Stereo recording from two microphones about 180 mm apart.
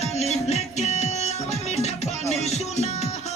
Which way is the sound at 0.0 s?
40° left (ahead or behind).